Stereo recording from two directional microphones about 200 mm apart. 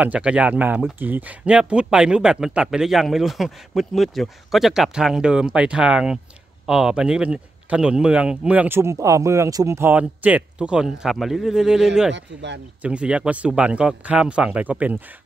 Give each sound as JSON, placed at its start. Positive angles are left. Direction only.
{"t": 0.0, "sound": "speech", "side_deg": -5}
{"t": 12.1, "sound": "speech", "side_deg": -60}
{"t": 12.8, "sound": "speech", "side_deg": -5}